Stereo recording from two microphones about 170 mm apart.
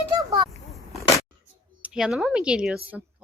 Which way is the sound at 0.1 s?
20° right (ahead or behind).